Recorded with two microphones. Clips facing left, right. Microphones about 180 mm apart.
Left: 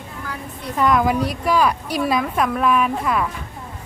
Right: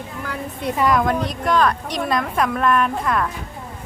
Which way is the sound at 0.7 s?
Centre (ahead or behind).